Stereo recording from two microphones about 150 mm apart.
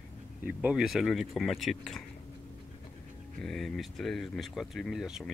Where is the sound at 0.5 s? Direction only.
10° right (ahead or behind).